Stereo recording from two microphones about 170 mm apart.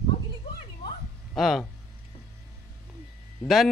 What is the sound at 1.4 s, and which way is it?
Speech, centre (ahead or behind).